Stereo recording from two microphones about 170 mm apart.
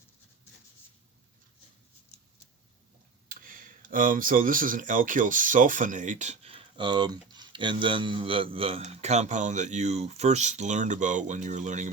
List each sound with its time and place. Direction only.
3.2 s speech: 55° right (ahead or behind)